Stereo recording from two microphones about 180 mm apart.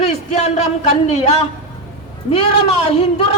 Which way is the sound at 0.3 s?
35° left (ahead or behind).